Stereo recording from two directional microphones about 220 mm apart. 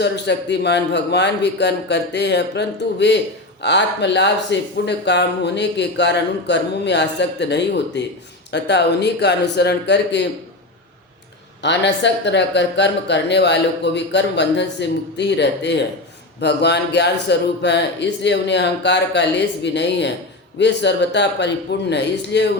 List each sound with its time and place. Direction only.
0.0 s speech: 50° left (ahead or behind)
11.6 s speech: 50° left (ahead or behind)